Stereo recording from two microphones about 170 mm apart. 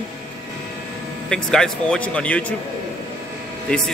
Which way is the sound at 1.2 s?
5° left (ahead or behind).